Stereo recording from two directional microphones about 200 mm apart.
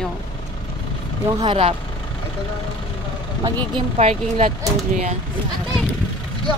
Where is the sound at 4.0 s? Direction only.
35° right (ahead or behind).